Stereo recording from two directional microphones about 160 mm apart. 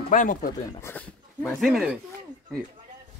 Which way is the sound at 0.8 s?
10° left (ahead or behind).